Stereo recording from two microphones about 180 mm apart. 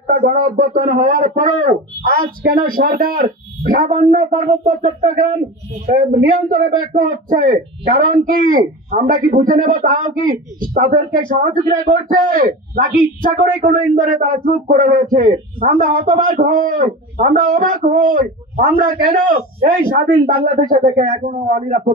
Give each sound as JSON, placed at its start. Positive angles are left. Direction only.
{"t": 0.1, "sound": "speech", "side_deg": -55}